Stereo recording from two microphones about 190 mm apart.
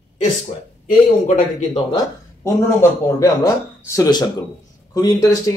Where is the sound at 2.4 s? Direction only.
15° left (ahead or behind).